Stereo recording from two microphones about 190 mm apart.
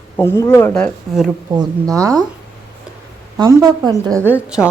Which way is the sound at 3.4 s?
20° right (ahead or behind).